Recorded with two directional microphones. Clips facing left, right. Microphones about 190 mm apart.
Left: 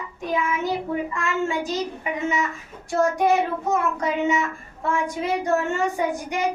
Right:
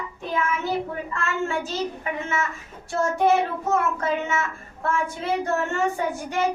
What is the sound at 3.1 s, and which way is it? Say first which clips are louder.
Child singing: even; 15° left (ahead or behind).